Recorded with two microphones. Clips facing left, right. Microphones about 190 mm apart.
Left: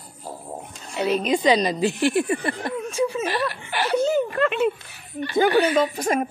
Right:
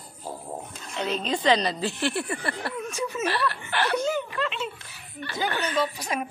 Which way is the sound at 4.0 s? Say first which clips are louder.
Left 7 dB; 40° left (ahead or behind).